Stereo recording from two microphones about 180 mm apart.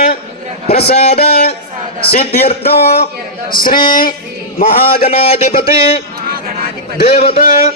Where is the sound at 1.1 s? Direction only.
60° left (ahead or behind).